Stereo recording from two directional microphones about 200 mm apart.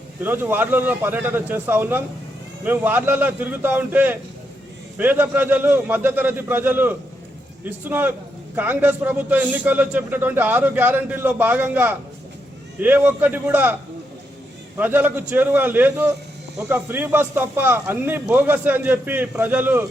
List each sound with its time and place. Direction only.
0.2 s a man's voice: 10° right (ahead or behind)
14.8 s a man's voice: 10° right (ahead or behind)